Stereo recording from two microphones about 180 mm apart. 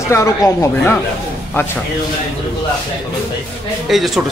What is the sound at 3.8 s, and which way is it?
Speech, centre (ahead or behind).